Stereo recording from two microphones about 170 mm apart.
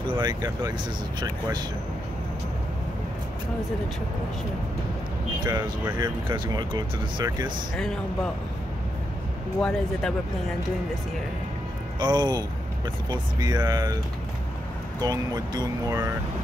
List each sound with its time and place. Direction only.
0.2 s speech: 25° right (ahead or behind)
5.4 s speech: 25° right (ahead or behind)
7.7 s speech: 5° left (ahead or behind)
9.6 s speech: 5° left (ahead or behind)
12.0 s speech: 25° right (ahead or behind)
15.0 s speech: 25° right (ahead or behind)